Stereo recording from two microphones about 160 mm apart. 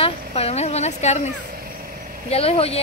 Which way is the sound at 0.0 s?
40° left (ahead or behind).